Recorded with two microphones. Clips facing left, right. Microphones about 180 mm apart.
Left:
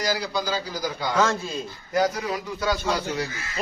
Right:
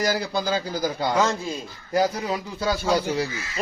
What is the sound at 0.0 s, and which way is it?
Speech, 50° right (ahead or behind).